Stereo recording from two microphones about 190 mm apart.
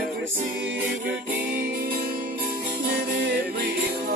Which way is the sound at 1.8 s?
50° right (ahead or behind).